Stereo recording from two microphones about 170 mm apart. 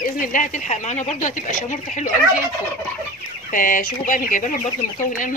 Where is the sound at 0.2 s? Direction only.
50° left (ahead or behind).